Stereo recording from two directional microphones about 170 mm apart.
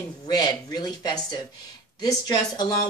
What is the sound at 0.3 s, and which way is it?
Speech, 25° left (ahead or behind).